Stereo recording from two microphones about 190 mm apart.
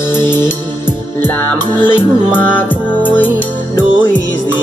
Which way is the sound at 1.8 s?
10° left (ahead or behind).